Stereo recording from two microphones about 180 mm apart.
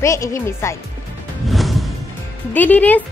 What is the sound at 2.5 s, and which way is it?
Speech, 10° left (ahead or behind).